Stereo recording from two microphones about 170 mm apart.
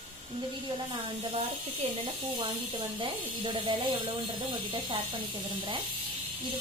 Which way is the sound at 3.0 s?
30° right (ahead or behind).